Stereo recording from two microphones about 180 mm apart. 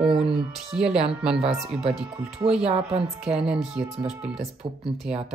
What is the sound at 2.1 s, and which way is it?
Speech, 35° right (ahead or behind).